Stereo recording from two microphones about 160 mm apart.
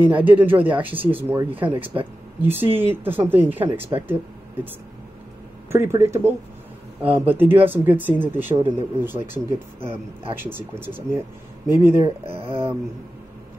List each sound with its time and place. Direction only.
0.0 s speech: 10° right (ahead or behind)
5.7 s speech: 15° right (ahead or behind)
12.3 s speech: 35° right (ahead or behind)